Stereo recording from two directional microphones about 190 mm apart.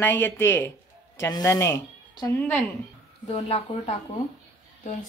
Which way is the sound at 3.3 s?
35° left (ahead or behind).